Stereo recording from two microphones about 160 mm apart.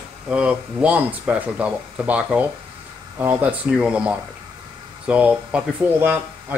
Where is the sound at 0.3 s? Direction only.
5° right (ahead or behind).